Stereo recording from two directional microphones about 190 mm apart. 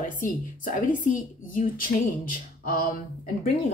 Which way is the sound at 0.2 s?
45° left (ahead or behind).